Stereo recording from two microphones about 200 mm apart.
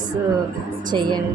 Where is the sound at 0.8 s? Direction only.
20° right (ahead or behind).